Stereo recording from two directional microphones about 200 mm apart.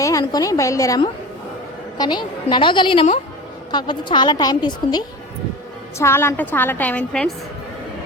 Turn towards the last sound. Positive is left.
turn(degrees=5)  # may be behind; listen again after turning